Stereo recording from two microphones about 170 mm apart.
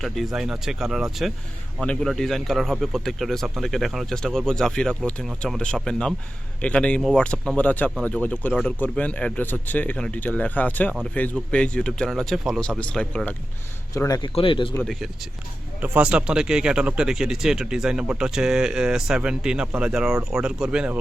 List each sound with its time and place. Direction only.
0.0 s speech: centre (ahead or behind)
13.9 s speech: 20° left (ahead or behind)
14.3 s speech: 30° left (ahead or behind)
15.8 s speech: 10° right (ahead or behind)